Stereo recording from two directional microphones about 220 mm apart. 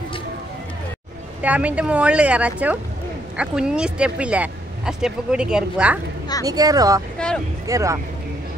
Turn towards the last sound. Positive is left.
turn(degrees=-15)  # may be behind; listen again after turning